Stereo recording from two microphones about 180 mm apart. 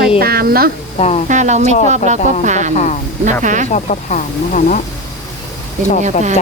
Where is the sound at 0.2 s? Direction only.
60° right (ahead or behind).